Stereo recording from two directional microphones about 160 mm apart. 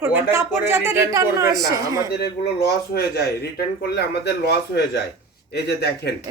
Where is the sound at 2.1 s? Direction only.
85° left.